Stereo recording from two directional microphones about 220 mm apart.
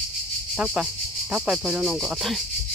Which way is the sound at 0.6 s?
5° right (ahead or behind).